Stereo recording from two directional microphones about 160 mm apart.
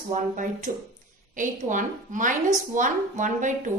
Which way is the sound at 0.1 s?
50° right (ahead or behind).